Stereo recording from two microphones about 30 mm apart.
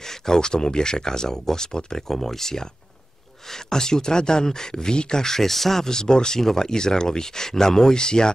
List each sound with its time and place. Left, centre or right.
0.3 s speech: left
2.0 s speech: centre
3.7 s speech: left
5.9 s speech: left